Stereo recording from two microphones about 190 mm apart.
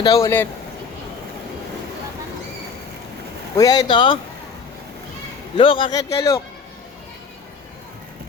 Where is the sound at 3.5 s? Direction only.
20° left (ahead or behind).